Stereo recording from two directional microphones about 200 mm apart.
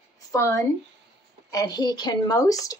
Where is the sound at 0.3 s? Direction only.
15° left (ahead or behind).